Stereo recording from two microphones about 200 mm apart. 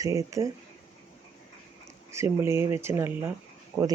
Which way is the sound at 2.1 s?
15° right (ahead or behind).